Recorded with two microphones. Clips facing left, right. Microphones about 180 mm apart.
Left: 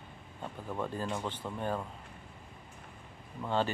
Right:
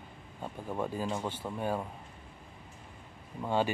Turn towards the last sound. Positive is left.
turn(degrees=-10)  # may be behind; listen again after turning